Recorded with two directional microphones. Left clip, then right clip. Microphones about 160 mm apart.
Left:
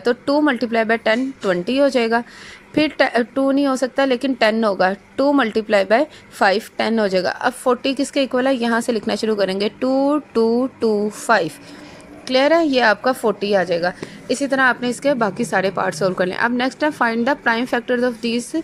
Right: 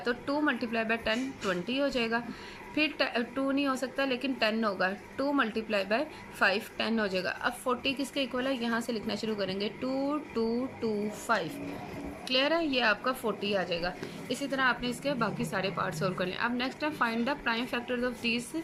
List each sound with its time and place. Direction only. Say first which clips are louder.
0.0 s a woman's voice: left 13 dB; 45° left (ahead or behind)